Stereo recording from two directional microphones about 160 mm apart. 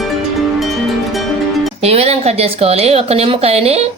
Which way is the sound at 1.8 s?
40° right (ahead or behind).